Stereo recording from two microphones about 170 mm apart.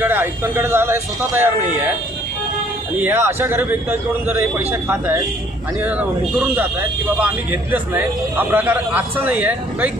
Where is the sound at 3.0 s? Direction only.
10° right (ahead or behind).